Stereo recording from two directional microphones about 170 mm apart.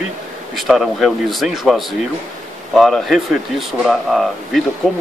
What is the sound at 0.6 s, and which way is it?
Speech, centre (ahead or behind).